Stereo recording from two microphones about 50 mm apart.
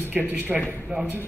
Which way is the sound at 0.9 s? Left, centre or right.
Right.